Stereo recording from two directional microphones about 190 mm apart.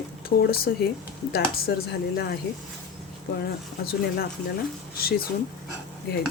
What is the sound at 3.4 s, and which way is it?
A woman's voice, 55° left (ahead or behind).